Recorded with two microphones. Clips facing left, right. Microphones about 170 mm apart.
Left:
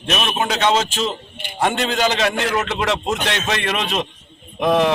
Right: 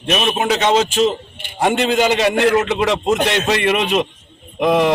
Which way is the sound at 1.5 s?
15° right (ahead or behind).